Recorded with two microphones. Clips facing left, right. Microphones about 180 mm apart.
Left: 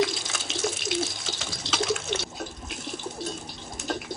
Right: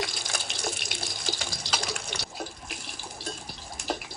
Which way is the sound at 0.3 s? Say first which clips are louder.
Left 4 dB; centre (ahead or behind).